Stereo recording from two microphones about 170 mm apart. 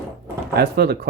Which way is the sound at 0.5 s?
75° right (ahead or behind).